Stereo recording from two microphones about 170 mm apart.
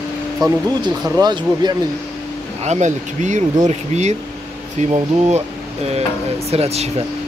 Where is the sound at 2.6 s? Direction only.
45° right (ahead or behind).